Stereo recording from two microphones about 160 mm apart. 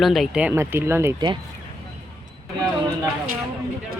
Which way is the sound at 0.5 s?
15° right (ahead or behind).